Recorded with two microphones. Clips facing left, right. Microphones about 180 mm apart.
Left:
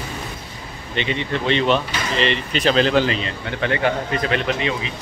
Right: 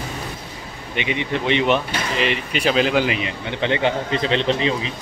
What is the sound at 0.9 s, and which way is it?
Speech, 15° right (ahead or behind).